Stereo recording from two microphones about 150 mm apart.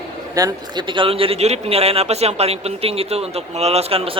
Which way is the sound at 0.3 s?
25° right (ahead or behind).